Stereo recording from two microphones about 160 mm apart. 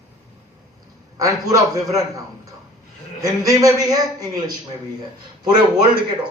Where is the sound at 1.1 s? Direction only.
20° right (ahead or behind).